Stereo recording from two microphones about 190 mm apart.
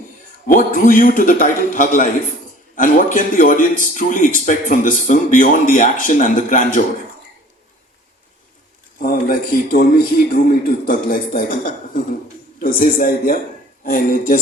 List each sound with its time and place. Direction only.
0.4 s a man's voice: 45° left (ahead or behind)
9.0 s a man's voice: 50° left (ahead or behind)